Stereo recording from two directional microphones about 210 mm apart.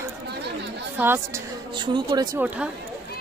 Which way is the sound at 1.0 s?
10° right (ahead or behind).